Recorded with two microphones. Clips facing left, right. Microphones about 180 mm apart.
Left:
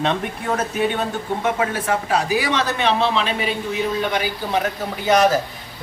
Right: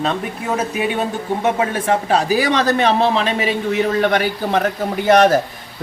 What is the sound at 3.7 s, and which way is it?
Speech, 60° right (ahead or behind).